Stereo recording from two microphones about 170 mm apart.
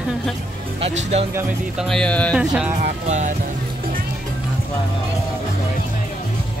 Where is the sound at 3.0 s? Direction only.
45° right (ahead or behind).